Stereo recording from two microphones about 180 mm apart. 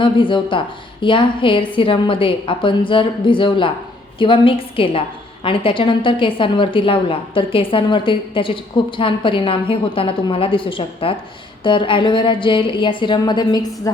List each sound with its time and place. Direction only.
0.0 s a woman's voice: 30° left (ahead or behind)